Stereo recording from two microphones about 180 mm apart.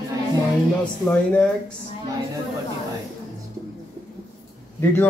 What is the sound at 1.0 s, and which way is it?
Speech, 10° left (ahead or behind).